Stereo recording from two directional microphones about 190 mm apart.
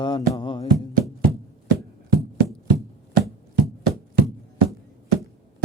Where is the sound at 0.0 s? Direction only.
25° left (ahead or behind).